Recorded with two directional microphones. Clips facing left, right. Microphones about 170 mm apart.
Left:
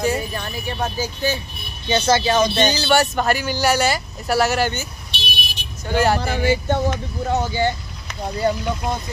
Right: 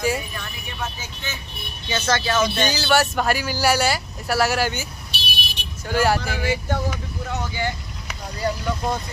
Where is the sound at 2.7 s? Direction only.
5° right (ahead or behind).